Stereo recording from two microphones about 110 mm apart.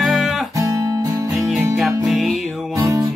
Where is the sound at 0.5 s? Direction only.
30° right (ahead or behind).